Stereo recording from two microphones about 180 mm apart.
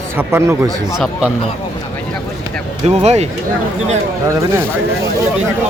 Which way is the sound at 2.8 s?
35° right (ahead or behind).